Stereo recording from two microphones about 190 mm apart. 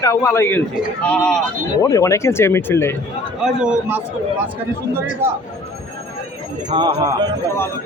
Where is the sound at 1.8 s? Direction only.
15° left (ahead or behind).